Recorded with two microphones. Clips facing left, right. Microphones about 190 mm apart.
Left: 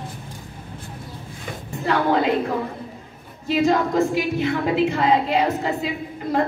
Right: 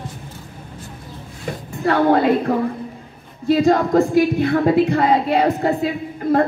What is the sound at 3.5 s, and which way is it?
A woman's voice, 50° right (ahead or behind).